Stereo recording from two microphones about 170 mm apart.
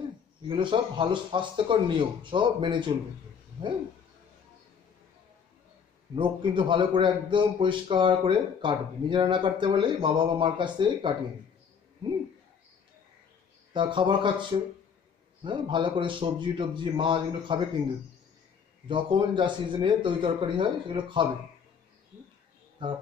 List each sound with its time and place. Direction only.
0.5 s a man's voice: 30° right (ahead or behind)
6.1 s a man's voice: 30° right (ahead or behind)
13.7 s a man's voice: 30° right (ahead or behind)
18.9 s a man's voice: 30° right (ahead or behind)
22.8 s a man's voice: 30° right (ahead or behind)